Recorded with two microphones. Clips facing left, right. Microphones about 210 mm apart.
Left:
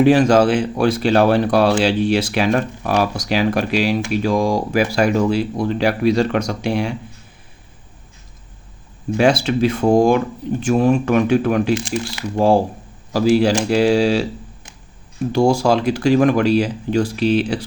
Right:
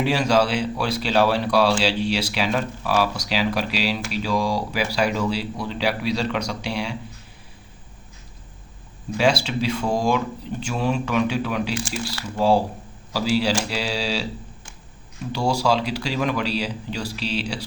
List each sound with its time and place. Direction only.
0.0 s speech: 50° left (ahead or behind)
9.1 s speech: 50° left (ahead or behind)
15.3 s speech: 50° left (ahead or behind)